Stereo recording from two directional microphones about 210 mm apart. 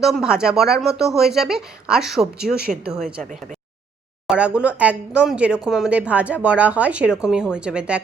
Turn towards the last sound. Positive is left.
turn(degrees=-5)  # may be behind; listen again after turning